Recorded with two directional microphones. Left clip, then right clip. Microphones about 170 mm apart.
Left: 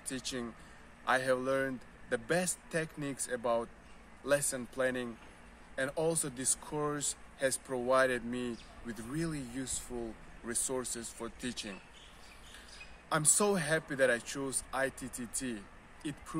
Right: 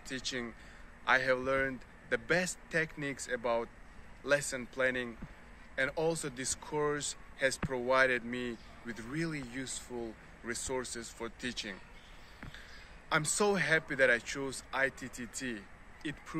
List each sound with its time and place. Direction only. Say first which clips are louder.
0.1 s a man's voice: right 2 dB; 15° left (ahead or behind)
13.1 s a man's voice: right 1 dB; 15° left (ahead or behind)